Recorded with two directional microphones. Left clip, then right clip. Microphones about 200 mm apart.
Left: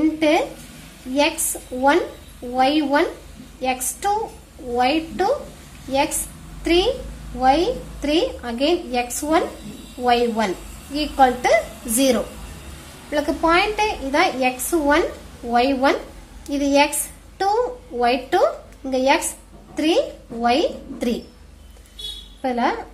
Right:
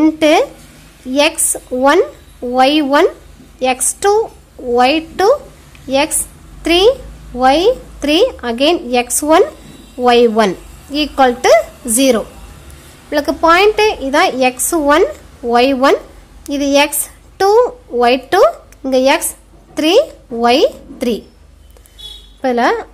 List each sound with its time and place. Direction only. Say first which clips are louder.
0.0 s speech: right 8 dB; 35° right (ahead or behind)
1.5 s a woman's voice: right 7 dB; 40° right (ahead or behind)
13.1 s a woman's voice: right 7 dB; 35° right (ahead or behind)
22.4 s a woman's voice: right 8 dB; 35° right (ahead or behind)